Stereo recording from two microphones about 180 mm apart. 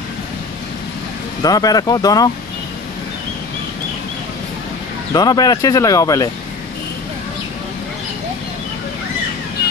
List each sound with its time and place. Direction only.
1.4 s speech: 20° left (ahead or behind)
5.1 s speech: 20° left (ahead or behind)